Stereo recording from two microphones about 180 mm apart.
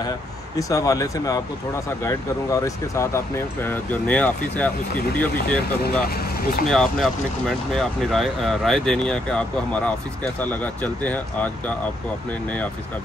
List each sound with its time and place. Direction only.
0.6 s speech: 20° left (ahead or behind)
6.0 s speech: 55° left (ahead or behind)
6.7 s speech: centre (ahead or behind)